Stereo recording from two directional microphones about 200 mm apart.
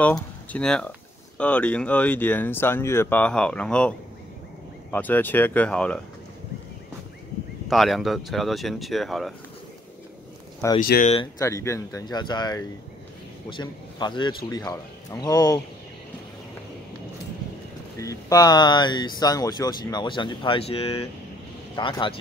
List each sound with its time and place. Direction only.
0.0 s speech: 5° left (ahead or behind)
4.9 s speech: 10° left (ahead or behind)
7.6 s speech: centre (ahead or behind)
10.8 s speech: 45° left (ahead or behind)
11.3 s speech: 15° left (ahead or behind)
17.9 s speech: 15° left (ahead or behind)